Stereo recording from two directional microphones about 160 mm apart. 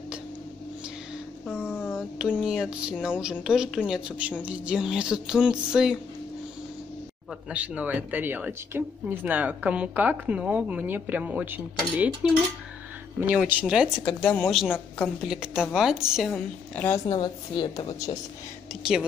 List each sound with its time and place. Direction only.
1.9 s music: 5° right (ahead or behind)
3.4 s a woman's voice: 5° right (ahead or behind)
7.4 s a woman's voice: 10° right (ahead or behind)
16.7 s speech: 10° left (ahead or behind)
17.0 s a woman's voice: 30° left (ahead or behind)
18.8 s a woman's voice: 5° right (ahead or behind)